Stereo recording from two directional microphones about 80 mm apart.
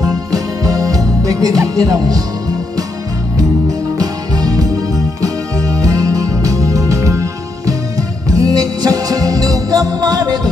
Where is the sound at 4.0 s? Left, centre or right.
Right.